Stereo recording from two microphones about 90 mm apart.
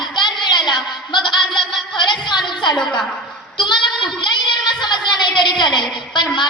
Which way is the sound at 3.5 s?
60° left (ahead or behind).